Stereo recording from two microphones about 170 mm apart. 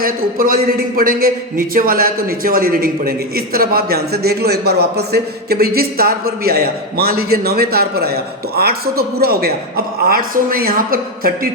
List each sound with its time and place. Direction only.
0.0 s a man's voice: 60° right (ahead or behind)